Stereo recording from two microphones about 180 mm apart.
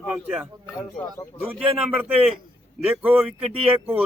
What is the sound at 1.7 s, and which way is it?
Speech, 35° right (ahead or behind).